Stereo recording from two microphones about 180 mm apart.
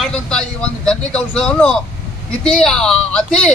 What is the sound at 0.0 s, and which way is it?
A woman's voice, 5° left (ahead or behind).